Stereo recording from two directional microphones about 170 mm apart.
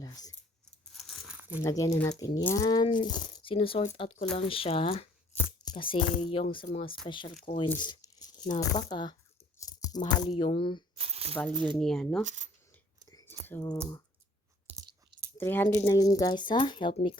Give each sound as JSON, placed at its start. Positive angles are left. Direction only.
{"t": 0.0, "sound": "speech", "side_deg": 20}
{"t": 0.6, "sound": "a sound", "side_deg": 0}
{"t": 1.4, "sound": "crumpling", "side_deg": -10}
{"t": 1.6, "sound": "speech", "side_deg": 20}
{"t": 10.9, "sound": "a sound", "side_deg": -35}
{"t": 11.5, "sound": "speech", "side_deg": -30}
{"t": 11.8, "sound": "speech", "side_deg": 5}
{"t": 12.2, "sound": "speech", "side_deg": -45}
{"t": 13.1, "sound": "whispering", "side_deg": 20}
{"t": 13.5, "sound": "speech", "side_deg": 15}
{"t": 15.4, "sound": "speech", "side_deg": 10}